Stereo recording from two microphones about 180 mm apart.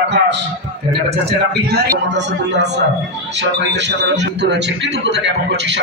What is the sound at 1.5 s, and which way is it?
A man's voice, 65° right (ahead or behind).